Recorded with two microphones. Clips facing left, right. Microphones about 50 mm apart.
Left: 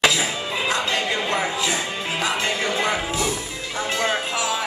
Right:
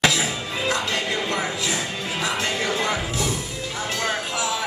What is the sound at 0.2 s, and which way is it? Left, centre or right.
Music, left.